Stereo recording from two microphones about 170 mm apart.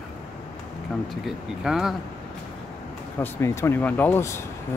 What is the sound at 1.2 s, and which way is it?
Speech, 5° right (ahead or behind).